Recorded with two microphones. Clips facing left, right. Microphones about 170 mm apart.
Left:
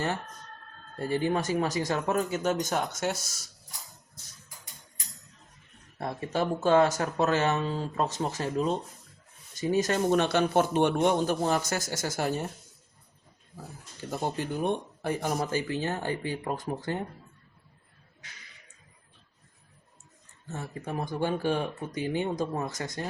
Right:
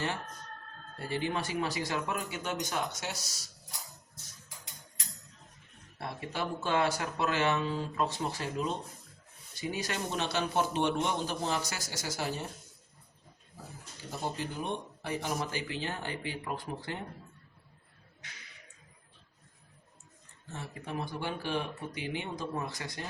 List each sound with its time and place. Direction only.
0.9 s a man's voice: 45° left (ahead or behind)
6.0 s a man's voice: 45° left (ahead or behind)
14.1 s a man's voice: 50° left (ahead or behind)
20.5 s a man's voice: 45° left (ahead or behind)